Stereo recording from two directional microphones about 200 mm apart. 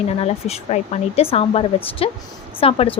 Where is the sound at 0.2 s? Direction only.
30° left (ahead or behind).